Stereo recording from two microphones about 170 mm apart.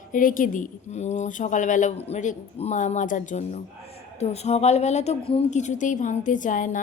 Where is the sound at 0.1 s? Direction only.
55° left (ahead or behind).